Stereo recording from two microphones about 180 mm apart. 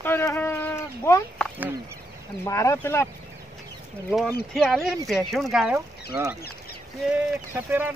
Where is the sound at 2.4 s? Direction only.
15° left (ahead or behind).